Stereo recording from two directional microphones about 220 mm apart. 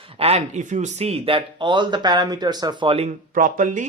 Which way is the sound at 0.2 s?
25° right (ahead or behind).